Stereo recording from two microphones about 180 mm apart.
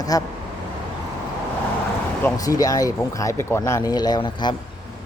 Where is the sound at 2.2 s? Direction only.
20° left (ahead or behind).